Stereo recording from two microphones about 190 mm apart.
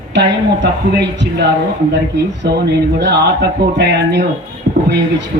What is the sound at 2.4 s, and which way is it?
A man's voice, 60° right (ahead or behind).